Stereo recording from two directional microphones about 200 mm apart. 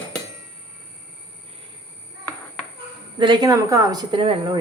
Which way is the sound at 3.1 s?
25° right (ahead or behind).